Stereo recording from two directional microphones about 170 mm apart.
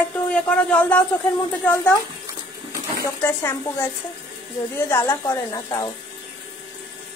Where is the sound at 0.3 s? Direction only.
5° left (ahead or behind).